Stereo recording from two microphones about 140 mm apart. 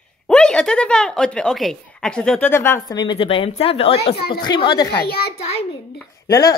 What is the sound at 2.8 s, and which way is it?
Speech, 30° left (ahead or behind).